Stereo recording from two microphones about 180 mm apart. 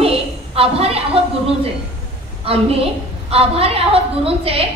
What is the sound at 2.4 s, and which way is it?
A woman's voice, 30° right (ahead or behind).